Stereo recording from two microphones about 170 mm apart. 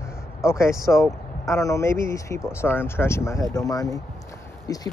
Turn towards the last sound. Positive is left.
turn(degrees=20)  # may be behind; listen again after turning